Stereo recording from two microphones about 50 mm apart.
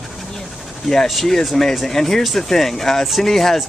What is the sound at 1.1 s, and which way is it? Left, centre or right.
Speech, centre.